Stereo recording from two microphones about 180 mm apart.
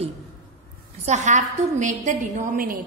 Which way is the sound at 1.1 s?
40° right (ahead or behind).